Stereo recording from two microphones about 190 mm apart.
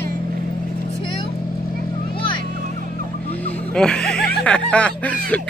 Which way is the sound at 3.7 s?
5° left (ahead or behind).